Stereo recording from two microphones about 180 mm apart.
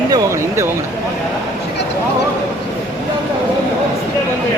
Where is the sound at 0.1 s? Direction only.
15° right (ahead or behind).